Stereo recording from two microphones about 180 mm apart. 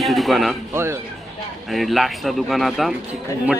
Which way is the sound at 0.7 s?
15° right (ahead or behind).